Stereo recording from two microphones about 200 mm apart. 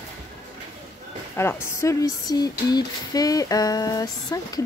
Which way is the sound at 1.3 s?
15° left (ahead or behind).